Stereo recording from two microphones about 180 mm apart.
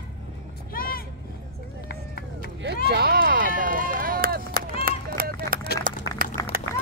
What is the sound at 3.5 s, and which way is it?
Run, 50° right (ahead or behind).